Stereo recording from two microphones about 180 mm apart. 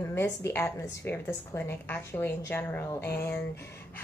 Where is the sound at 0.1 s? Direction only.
15° left (ahead or behind).